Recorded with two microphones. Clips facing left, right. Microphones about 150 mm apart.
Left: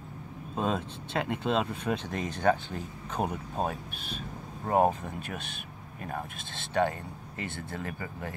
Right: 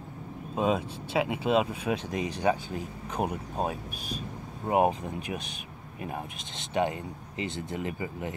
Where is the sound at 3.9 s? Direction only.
40° right (ahead or behind).